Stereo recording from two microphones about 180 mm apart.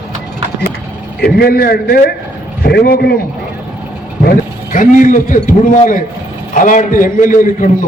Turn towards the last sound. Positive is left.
turn(degrees=45)  # may be behind; listen again after turning